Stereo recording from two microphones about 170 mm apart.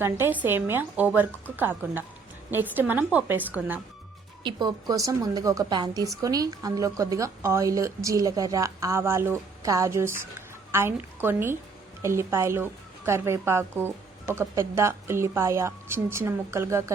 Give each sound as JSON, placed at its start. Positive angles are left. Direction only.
{"t": 0.0, "sound": "speech", "side_deg": -10}
{"t": 4.4, "sound": "a woman's voice", "side_deg": -25}